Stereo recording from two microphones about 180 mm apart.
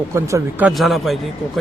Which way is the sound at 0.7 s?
Centre (ahead or behind).